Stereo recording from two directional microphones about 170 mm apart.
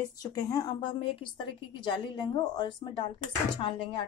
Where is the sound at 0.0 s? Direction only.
20° left (ahead or behind).